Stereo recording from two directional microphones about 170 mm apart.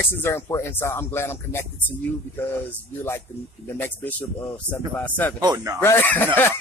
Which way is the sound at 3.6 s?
15° left (ahead or behind).